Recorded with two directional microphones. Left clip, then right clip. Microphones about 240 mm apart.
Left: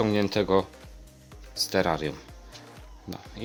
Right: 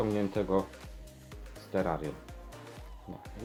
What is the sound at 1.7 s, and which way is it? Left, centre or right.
Speech, left.